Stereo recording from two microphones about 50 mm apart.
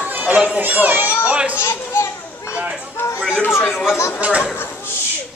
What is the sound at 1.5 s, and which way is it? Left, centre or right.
Children playing, left.